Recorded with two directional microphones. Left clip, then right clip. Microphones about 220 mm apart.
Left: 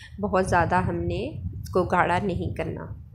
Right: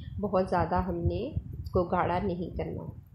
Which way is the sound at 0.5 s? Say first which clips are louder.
Left 6 dB; 20° left (ahead or behind).